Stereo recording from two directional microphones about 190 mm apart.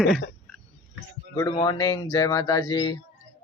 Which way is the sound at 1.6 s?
20° left (ahead or behind).